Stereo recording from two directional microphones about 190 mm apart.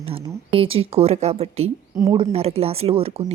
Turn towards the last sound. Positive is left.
turn(degrees=-30)  # may be behind; listen again after turning